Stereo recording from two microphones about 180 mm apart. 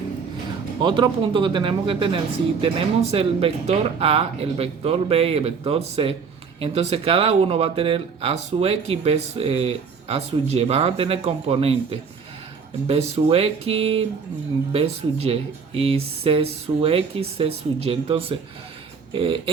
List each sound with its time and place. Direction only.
0.8 s speech: 25° right (ahead or behind)